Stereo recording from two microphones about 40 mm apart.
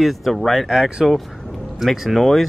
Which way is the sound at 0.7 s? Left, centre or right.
Centre.